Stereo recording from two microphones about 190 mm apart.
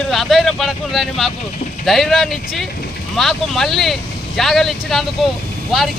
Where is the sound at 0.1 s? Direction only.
Centre (ahead or behind).